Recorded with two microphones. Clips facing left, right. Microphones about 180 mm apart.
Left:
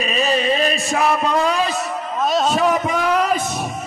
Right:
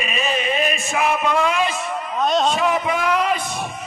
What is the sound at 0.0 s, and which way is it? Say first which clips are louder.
Chant: left 4 dB; 35° left (ahead or behind).